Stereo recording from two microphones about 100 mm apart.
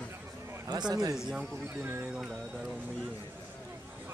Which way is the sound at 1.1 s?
5° right (ahead or behind).